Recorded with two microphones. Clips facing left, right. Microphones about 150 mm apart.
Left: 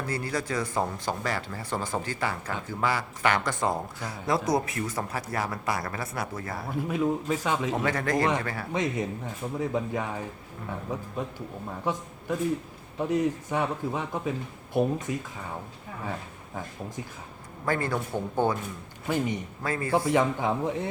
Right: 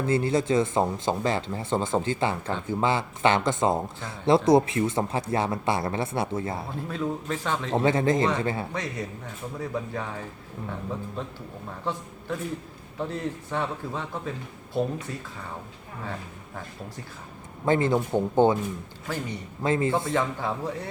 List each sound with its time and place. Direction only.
0.0 s speech: 25° right (ahead or behind)
6.8 s a man's voice: 15° left (ahead or behind)
7.9 s speech: 25° right (ahead or behind)
8.7 s speech: 20° left (ahead or behind)
11.2 s a man's voice: 15° left (ahead or behind)
17.7 s speech: 20° right (ahead or behind)
19.0 s a man's voice: 15° left (ahead or behind)
19.6 s speech: 25° right (ahead or behind)
20.1 s speech: 15° left (ahead or behind)